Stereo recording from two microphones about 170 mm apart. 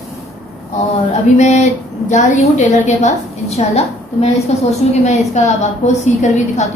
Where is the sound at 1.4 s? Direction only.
40° left (ahead or behind).